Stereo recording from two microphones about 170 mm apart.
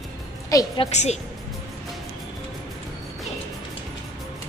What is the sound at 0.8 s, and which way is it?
Speech, 40° left (ahead or behind).